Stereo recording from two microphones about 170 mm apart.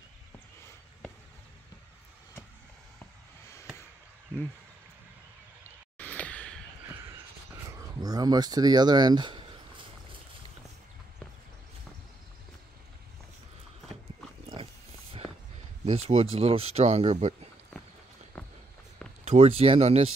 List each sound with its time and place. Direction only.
5.9 s a sound: 10° left (ahead or behind)
7.7 s speech: 20° right (ahead or behind)
14.4 s pig: 30° right (ahead or behind)
15.8 s speech: 35° right (ahead or behind)
18.3 s walk: 10° left (ahead or behind)
19.2 s speech: 35° right (ahead or behind)